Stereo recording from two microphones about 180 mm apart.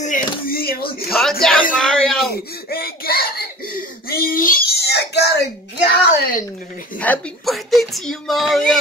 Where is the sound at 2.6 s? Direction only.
60° left (ahead or behind).